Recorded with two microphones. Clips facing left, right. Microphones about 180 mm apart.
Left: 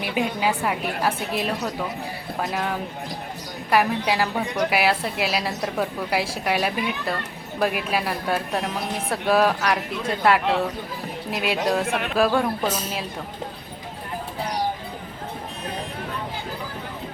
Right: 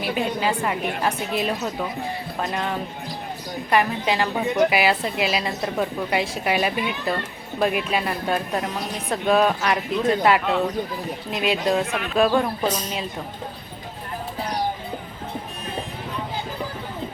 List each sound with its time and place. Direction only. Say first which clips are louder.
0.0 s a woman's voice: even; 10° left (ahead or behind)